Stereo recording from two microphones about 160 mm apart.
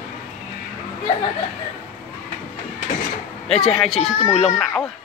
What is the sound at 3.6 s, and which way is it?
A woman's voice, 5° left (ahead or behind).